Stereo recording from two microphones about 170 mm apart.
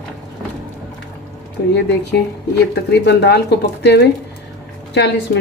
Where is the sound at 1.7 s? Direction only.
75° left (ahead or behind).